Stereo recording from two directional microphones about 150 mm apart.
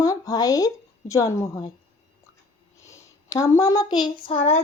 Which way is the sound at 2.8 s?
20° left (ahead or behind).